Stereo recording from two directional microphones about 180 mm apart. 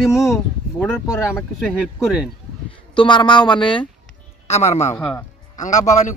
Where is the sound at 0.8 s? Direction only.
5° left (ahead or behind).